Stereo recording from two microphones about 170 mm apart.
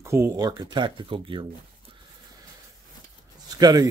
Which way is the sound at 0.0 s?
15° right (ahead or behind).